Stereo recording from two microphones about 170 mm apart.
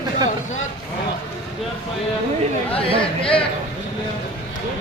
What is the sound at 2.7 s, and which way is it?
Speech, 35° left (ahead or behind).